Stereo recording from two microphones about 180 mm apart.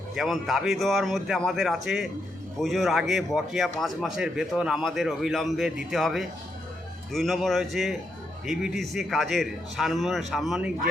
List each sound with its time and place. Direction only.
0.2 s a man's voice: centre (ahead or behind)